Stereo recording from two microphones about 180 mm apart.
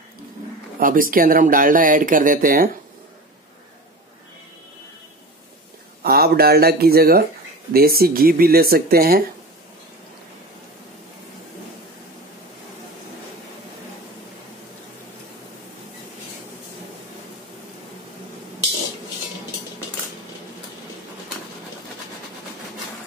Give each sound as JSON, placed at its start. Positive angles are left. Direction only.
{"t": 0.7, "sound": "speech", "side_deg": -50}
{"t": 6.0, "sound": "speech", "side_deg": -60}